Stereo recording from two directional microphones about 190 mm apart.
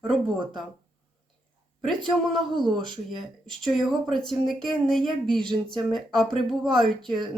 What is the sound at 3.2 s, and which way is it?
Speech, centre (ahead or behind).